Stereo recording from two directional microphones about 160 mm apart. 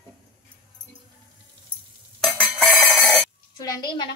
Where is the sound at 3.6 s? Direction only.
25° left (ahead or behind).